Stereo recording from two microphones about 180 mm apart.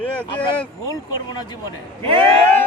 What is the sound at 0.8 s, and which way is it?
Speech, 20° left (ahead or behind).